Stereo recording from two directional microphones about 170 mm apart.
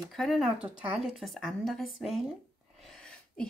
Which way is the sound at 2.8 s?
5° left (ahead or behind).